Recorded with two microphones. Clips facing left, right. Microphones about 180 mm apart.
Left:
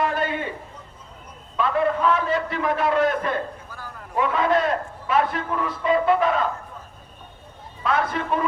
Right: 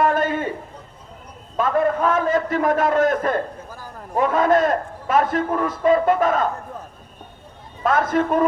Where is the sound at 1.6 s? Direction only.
45° right (ahead or behind).